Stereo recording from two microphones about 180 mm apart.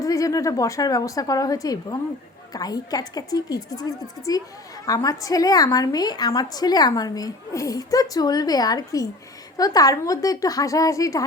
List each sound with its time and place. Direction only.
0.0 s a woman's voice: 20° left (ahead or behind)